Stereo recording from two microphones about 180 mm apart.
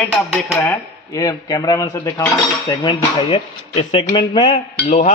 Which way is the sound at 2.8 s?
30° left (ahead or behind).